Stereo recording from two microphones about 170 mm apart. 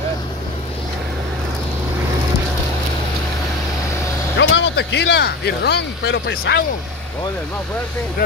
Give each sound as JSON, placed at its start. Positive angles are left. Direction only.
{"t": 4.4, "sound": "speech", "side_deg": 90}